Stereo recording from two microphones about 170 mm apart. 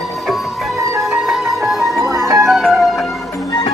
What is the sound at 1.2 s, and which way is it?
Music, centre (ahead or behind).